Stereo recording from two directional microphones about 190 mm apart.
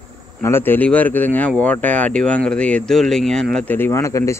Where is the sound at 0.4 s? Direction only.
10° left (ahead or behind).